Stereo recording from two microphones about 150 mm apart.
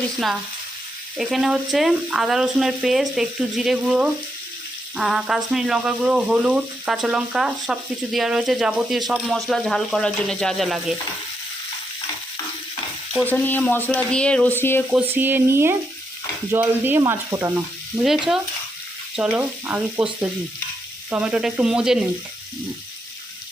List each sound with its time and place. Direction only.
1.1 s speech: centre (ahead or behind)
13.2 s speech: 10° left (ahead or behind)
14.8 s speech: 10° right (ahead or behind)
17.0 s frying: 20° right (ahead or behind)
17.9 s speech: centre (ahead or behind)
19.1 s frying: 5° right (ahead or behind)
19.4 s speech: 10° right (ahead or behind)
21.1 s speech: 5° right (ahead or behind)